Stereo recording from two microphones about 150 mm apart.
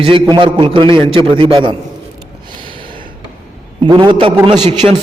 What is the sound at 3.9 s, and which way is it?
Speech, 30° right (ahead or behind).